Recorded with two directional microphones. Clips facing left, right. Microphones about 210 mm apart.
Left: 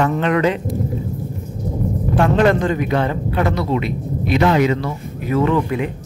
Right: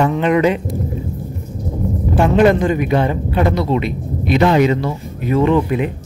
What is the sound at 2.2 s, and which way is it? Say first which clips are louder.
A man's voice: right 3 dB; 10° right (ahead or behind).